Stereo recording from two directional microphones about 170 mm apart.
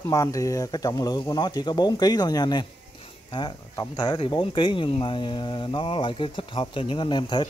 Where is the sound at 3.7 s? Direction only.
25° left (ahead or behind).